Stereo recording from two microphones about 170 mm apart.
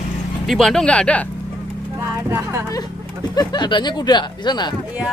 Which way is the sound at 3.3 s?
25° left (ahead or behind).